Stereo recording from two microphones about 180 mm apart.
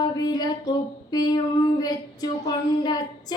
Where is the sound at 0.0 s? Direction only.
20° left (ahead or behind).